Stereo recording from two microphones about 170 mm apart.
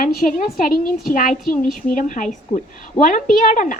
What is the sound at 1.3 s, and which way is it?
Speech, centre (ahead or behind).